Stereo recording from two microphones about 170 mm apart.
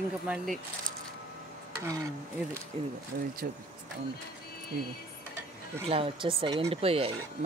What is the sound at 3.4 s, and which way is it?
Speech, 60° right (ahead or behind).